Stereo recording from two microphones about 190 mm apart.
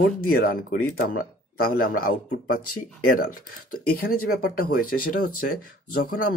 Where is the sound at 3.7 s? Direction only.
50° left (ahead or behind).